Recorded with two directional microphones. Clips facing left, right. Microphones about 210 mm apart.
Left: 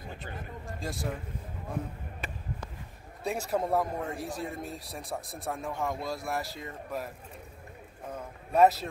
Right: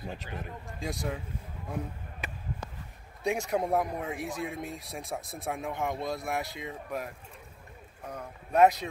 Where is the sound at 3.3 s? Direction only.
Centre (ahead or behind).